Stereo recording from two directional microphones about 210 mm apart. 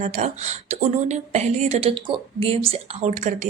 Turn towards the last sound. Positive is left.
turn(degrees=-35)  # may be behind; listen again after turning